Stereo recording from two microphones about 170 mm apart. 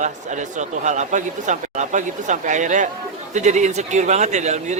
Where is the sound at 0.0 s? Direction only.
45° right (ahead or behind).